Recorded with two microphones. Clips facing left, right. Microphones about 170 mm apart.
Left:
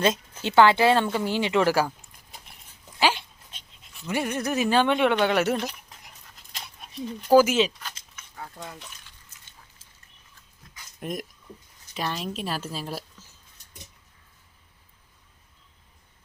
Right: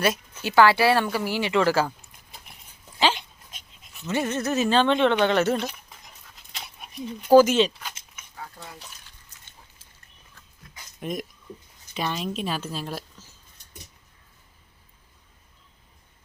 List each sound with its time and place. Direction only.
0.0 s speech: 25° left (ahead or behind)
4.0 s speech: 10° left (ahead or behind)
7.2 s speech: centre (ahead or behind)
11.0 s speech: centre (ahead or behind)